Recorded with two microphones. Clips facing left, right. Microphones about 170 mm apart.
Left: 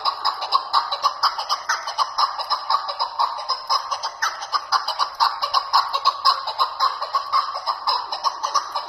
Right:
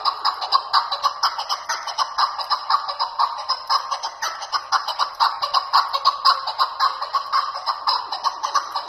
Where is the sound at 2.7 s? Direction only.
20° left (ahead or behind).